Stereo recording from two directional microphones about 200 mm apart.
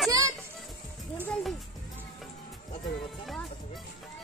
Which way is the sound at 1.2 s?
5° left (ahead or behind).